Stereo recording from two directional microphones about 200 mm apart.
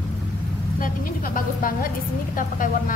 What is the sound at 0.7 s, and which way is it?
A woman's voice, 45° left (ahead or behind).